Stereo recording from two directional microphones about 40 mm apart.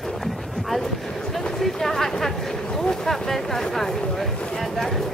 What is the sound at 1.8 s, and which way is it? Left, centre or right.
Speech, centre.